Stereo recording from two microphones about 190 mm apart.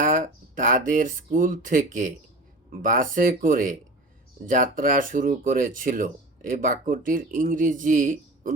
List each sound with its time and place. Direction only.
0.0 s speech: 45° right (ahead or behind)